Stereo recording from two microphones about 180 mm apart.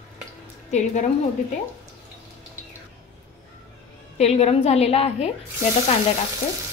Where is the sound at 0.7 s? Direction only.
40° left (ahead or behind).